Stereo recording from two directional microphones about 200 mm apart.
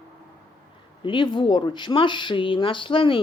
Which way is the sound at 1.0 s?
25° left (ahead or behind).